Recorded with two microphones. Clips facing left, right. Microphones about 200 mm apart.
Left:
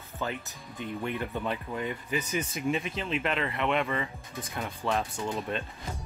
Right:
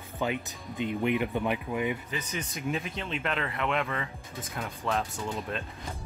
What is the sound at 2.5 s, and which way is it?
Speech, centre (ahead or behind).